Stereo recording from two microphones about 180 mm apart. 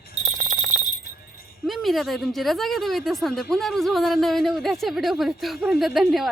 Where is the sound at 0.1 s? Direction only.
45° right (ahead or behind).